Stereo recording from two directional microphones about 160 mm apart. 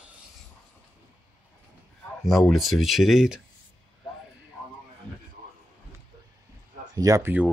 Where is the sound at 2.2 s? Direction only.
Centre (ahead or behind).